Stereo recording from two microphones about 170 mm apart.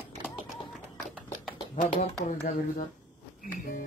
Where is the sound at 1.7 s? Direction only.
50° left (ahead or behind).